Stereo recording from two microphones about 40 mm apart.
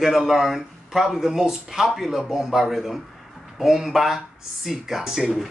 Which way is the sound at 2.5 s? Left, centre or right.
Centre.